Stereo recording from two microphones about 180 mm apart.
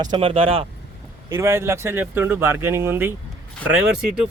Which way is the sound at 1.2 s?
15° right (ahead or behind).